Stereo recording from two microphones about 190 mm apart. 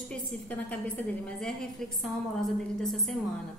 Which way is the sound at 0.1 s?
10° left (ahead or behind).